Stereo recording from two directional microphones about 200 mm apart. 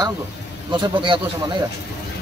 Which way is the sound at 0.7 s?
25° right (ahead or behind).